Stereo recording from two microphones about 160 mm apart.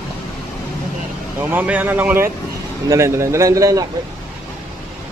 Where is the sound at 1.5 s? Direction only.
10° right (ahead or behind).